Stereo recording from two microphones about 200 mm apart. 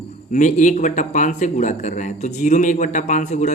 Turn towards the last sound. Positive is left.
turn(degrees=35)  # may be behind; listen again after turning